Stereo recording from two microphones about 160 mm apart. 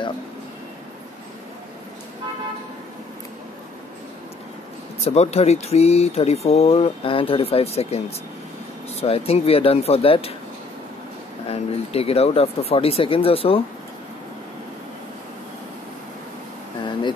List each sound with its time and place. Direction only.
5.0 s speech: 40° left (ahead or behind)
9.0 s speech: 35° left (ahead or behind)
11.4 s speech: 40° left (ahead or behind)